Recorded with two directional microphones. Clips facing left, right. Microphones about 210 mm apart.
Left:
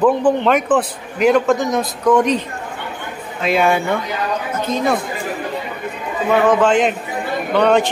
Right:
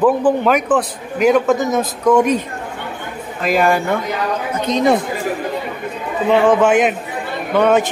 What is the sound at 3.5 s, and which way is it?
Speech, centre (ahead or behind).